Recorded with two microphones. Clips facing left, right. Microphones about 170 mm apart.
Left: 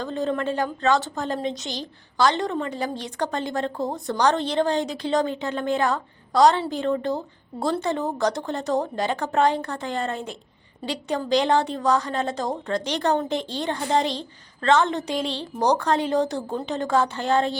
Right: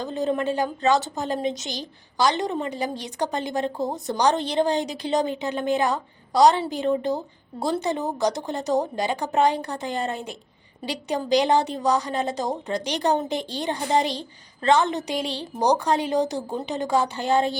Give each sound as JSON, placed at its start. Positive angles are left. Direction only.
{"t": 0.0, "sound": "a woman's voice", "side_deg": -15}